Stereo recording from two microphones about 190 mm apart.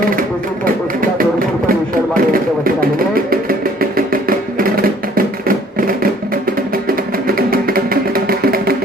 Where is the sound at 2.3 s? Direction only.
50° right (ahead or behind).